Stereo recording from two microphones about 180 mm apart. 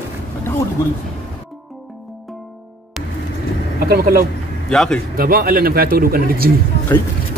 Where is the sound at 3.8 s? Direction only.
55° right (ahead or behind).